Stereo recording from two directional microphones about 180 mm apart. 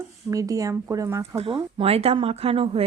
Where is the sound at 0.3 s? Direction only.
20° right (ahead or behind).